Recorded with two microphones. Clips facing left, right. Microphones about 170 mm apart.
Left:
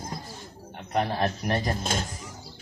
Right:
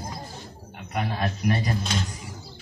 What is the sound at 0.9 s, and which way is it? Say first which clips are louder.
A man's voice: left 2 dB; 40° left (ahead or behind).